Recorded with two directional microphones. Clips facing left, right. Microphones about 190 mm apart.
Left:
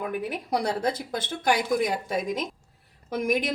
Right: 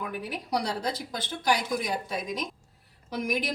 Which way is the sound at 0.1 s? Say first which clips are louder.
Left 3 dB; 55° left (ahead or behind).